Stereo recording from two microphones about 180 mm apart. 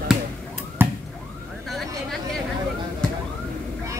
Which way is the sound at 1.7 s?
Centre (ahead or behind).